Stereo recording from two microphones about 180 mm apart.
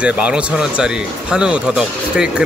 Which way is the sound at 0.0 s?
5° right (ahead or behind).